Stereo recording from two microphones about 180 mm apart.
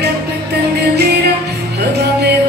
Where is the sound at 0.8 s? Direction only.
65° right (ahead or behind).